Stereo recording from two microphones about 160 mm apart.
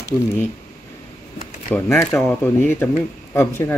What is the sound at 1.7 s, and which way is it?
Speech, 15° left (ahead or behind).